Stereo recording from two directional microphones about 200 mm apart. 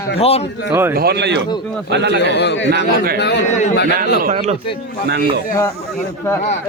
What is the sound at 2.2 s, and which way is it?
A man's voice, 60° left (ahead or behind).